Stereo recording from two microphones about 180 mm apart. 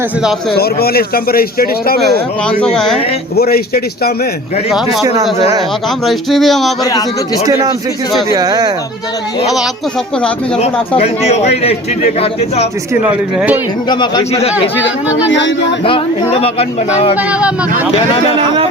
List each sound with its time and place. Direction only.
0.5 s speech: 60° left (ahead or behind)
2.0 s speech: centre (ahead or behind)
3.3 s speech: 60° left (ahead or behind)
4.7 s speech: centre (ahead or behind)
6.1 s speech: centre (ahead or behind)
7.4 s speech: 20° right (ahead or behind)
10.6 s speech: 35° left (ahead or behind)
12.9 s a man's voice: 10° right (ahead or behind)
13.9 s a man's voice: 25° left (ahead or behind)
15.3 s speech: 80° left
15.8 s speech: 30° left (ahead or behind)
17.2 s a man's voice: 10° right (ahead or behind)
17.9 s speech: 35° left (ahead or behind)